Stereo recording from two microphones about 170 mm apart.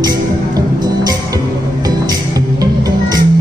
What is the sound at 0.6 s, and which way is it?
Music, 20° right (ahead or behind).